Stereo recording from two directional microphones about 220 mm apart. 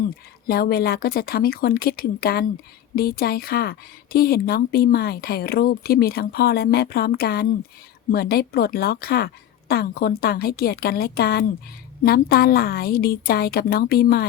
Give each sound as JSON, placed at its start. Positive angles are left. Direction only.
{"t": 0.4, "sound": "speech", "side_deg": 45}